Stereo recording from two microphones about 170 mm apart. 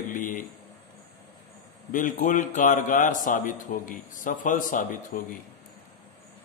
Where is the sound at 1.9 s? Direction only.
50° left (ahead or behind).